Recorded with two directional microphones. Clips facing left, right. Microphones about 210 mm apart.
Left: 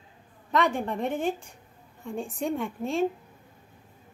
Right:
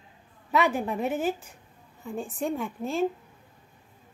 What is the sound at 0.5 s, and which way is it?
A woman's voice, 5° right (ahead or behind).